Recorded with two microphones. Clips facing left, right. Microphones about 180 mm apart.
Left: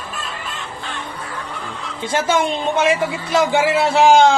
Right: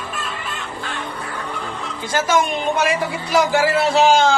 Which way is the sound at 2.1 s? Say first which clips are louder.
Even; 30° left (ahead or behind).